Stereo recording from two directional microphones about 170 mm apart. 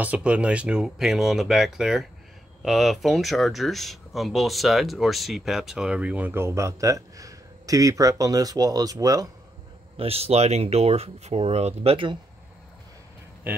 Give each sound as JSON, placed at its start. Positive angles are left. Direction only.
{"t": 0.0, "sound": "speech", "side_deg": -10}
{"t": 9.9, "sound": "speech", "side_deg": -35}